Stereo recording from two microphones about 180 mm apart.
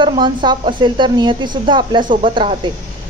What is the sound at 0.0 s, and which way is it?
Speech, 25° right (ahead or behind).